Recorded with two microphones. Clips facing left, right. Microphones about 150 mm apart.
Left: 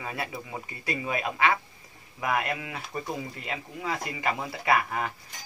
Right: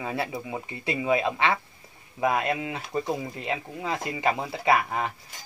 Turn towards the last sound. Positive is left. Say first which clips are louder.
# right 2 dB
turn(degrees=-25)  # may be behind; listen again after turning